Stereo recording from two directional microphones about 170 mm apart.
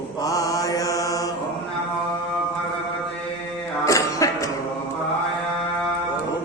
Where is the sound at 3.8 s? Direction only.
20° left (ahead or behind).